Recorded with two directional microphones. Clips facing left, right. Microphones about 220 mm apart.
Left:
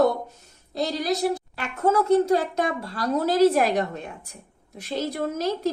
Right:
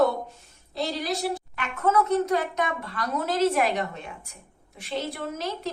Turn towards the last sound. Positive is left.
turn(degrees=40)  # may be behind; listen again after turning